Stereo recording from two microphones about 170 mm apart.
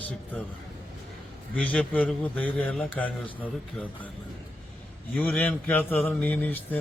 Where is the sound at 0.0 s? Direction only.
10° left (ahead or behind).